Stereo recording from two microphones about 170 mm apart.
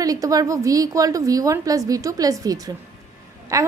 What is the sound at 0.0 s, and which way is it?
A woman's voice, 20° right (ahead or behind).